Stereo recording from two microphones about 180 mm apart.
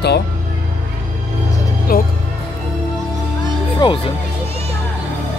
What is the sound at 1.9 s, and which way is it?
Speech, 55° left (ahead or behind).